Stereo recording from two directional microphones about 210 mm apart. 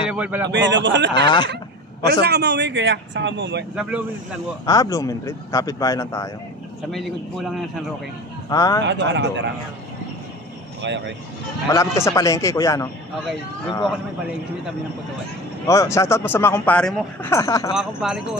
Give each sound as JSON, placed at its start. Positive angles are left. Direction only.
{"t": 0.0, "sound": "a man's voice", "side_deg": -5}
{"t": 0.5, "sound": "speech", "side_deg": -60}
{"t": 1.2, "sound": "speech", "side_deg": 20}
{"t": 2.2, "sound": "speech", "side_deg": -55}
{"t": 4.6, "sound": "speech", "side_deg": 15}
{"t": 6.9, "sound": "speech", "side_deg": 0}
{"t": 8.5, "sound": "speech", "side_deg": 15}
{"t": 8.8, "sound": "speech", "side_deg": -60}
{"t": 10.8, "sound": "speech", "side_deg": -55}
{"t": 11.7, "sound": "speech", "side_deg": 15}
{"t": 15.6, "sound": "speech", "side_deg": 15}
{"t": 17.7, "sound": "speech", "side_deg": 0}